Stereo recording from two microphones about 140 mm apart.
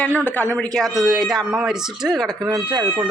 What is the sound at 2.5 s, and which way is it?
Speech, 35° right (ahead or behind).